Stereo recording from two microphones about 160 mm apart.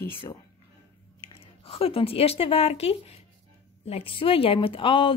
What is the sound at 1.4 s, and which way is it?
Speech, 35° left (ahead or behind).